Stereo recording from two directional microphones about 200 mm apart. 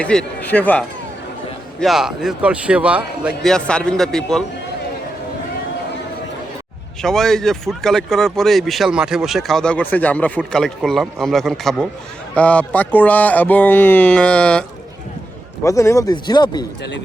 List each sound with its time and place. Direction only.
0.0 s speech: 5° left (ahead or behind)
7.0 s speech: centre (ahead or behind)
15.6 s speech: 15° left (ahead or behind)